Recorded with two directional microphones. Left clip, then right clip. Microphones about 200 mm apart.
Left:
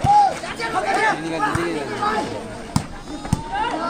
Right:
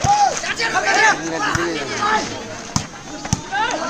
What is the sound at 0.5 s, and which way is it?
Chatter, 15° left (ahead or behind).